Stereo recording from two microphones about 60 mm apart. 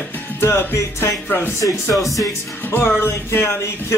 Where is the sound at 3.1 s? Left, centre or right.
Left.